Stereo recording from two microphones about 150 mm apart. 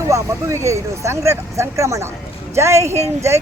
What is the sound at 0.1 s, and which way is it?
Speech, 20° right (ahead or behind).